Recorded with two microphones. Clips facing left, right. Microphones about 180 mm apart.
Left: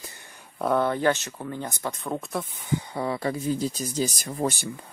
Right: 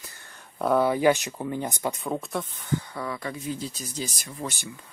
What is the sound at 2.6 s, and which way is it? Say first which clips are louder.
Speech: left 1 dB; 15° left (ahead or behind).